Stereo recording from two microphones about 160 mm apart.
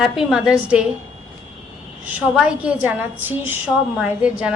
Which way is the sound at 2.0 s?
5° right (ahead or behind).